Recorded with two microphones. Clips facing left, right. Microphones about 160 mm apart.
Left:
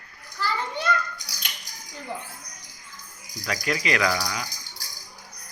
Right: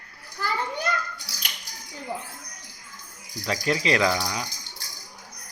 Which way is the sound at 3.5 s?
30° right (ahead or behind).